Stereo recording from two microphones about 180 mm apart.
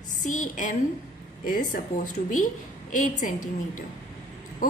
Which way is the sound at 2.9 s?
45° left (ahead or behind).